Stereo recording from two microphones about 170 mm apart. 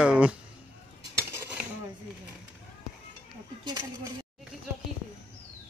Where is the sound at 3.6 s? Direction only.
25° right (ahead or behind).